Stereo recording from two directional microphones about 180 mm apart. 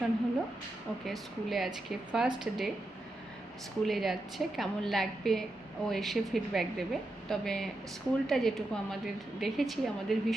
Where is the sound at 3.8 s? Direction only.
Centre (ahead or behind).